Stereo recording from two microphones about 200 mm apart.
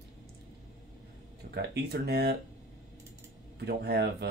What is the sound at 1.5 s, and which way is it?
Speech, 55° right (ahead or behind).